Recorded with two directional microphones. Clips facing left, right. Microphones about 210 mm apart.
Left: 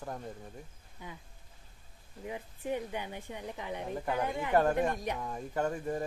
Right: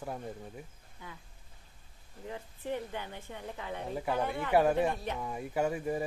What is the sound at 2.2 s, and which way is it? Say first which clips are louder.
A woman's voice: left 2 dB; 15° left (ahead or behind).